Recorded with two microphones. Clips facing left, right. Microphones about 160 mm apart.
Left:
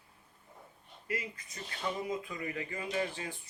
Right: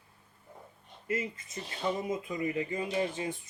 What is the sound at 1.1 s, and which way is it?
Speech, 25° right (ahead or behind).